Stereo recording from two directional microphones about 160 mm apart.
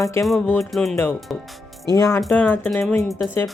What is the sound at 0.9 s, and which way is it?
Speech, 15° left (ahead or behind).